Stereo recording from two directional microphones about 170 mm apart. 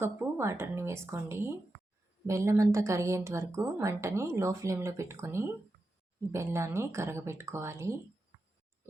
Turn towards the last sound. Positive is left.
turn(degrees=-15)  # may be behind; listen again after turning